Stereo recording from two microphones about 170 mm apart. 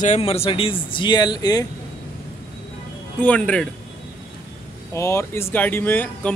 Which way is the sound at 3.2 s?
10° left (ahead or behind).